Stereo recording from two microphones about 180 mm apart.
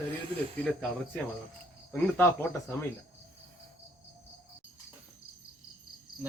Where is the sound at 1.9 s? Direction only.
10° left (ahead or behind).